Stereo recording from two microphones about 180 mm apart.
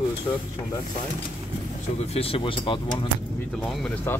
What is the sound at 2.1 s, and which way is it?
Speech, 30° left (ahead or behind).